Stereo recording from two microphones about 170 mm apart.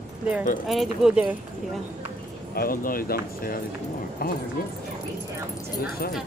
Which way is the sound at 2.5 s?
60° left (ahead or behind).